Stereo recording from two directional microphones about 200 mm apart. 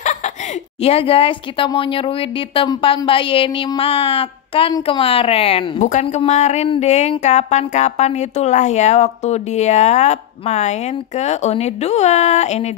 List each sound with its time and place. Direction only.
0.0 s chuckle: 40° left (ahead or behind)
0.8 s speech: 30° left (ahead or behind)